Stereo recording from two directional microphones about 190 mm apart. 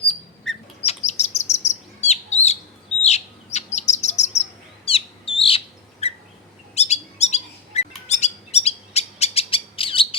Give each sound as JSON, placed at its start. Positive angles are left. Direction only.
{"t": 0.5, "sound": "bird", "side_deg": 0}
{"t": 0.8, "sound": "chirp", "side_deg": 35}
{"t": 4.9, "sound": "bird", "side_deg": 30}